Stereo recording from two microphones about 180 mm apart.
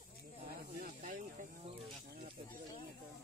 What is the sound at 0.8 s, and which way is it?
Snake, 50° right (ahead or behind).